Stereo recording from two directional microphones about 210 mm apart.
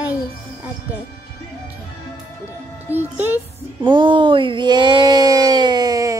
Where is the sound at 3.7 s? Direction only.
25° right (ahead or behind).